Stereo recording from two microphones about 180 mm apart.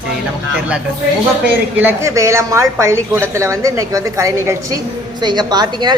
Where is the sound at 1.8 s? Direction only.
15° right (ahead or behind).